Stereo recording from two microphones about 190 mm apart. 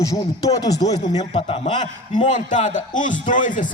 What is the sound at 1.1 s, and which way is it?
A man's voice, 35° left (ahead or behind).